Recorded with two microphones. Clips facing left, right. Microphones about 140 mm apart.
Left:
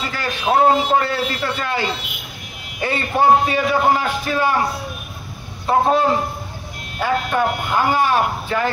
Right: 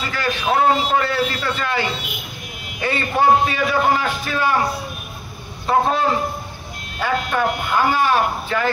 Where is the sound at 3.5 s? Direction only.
25° left (ahead or behind).